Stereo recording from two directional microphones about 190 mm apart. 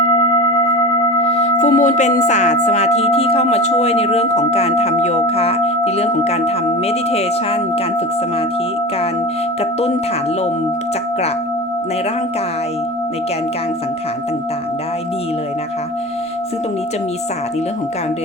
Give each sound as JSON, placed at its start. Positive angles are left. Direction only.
{"t": 1.3, "sound": "speech", "side_deg": 40}